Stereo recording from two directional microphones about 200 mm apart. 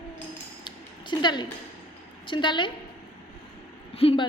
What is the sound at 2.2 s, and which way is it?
Speech, 25° left (ahead or behind).